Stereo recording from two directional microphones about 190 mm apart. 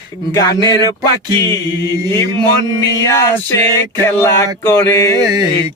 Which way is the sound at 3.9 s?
15° left (ahead or behind).